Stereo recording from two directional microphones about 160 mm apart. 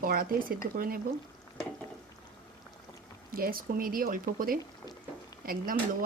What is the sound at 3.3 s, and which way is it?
Speech, 65° right (ahead or behind).